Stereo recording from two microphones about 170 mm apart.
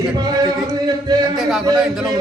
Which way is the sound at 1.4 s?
Centre (ahead or behind).